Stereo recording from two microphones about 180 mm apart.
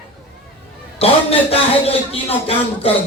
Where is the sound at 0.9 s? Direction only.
35° left (ahead or behind).